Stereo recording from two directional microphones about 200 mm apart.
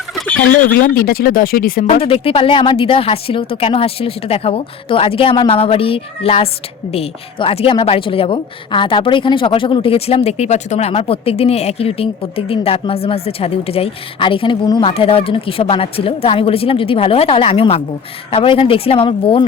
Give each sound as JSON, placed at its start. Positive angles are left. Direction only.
{"t": 0.2, "sound": "chicken", "side_deg": 5}
{"t": 0.7, "sound": "speech", "side_deg": 45}
{"t": 1.9, "sound": "a woman's voice", "side_deg": 30}